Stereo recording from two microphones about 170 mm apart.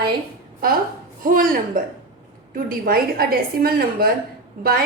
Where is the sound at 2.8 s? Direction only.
60° right (ahead or behind).